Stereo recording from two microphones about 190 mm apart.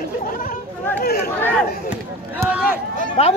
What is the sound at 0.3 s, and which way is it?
Chatter, 45° left (ahead or behind).